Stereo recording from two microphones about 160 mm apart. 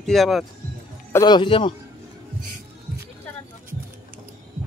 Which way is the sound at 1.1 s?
25° left (ahead or behind).